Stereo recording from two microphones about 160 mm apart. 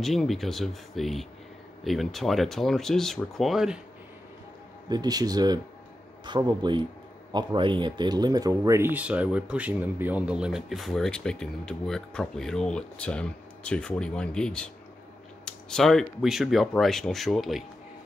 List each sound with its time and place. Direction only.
0.0 s speech: centre (ahead or behind)
4.8 s speech: 25° right (ahead or behind); by 17.6 s centre (ahead or behind)